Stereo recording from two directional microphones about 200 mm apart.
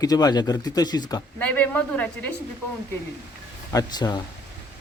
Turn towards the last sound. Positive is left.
turn(degrees=20)  # may be behind; listen again after turning